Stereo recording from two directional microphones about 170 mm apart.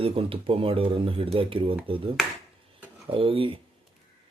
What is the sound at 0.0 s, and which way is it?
Speech, 35° right (ahead or behind).